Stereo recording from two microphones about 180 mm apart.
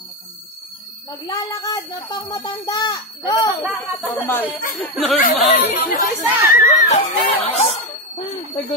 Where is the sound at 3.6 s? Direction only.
5° right (ahead or behind).